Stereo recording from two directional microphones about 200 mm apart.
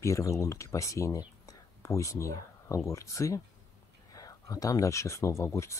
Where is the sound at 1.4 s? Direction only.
15° left (ahead or behind).